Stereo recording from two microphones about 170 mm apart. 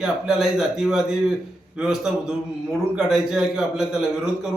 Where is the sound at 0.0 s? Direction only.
5° right (ahead or behind).